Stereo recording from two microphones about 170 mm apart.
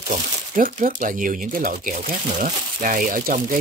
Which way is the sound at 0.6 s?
50° right (ahead or behind).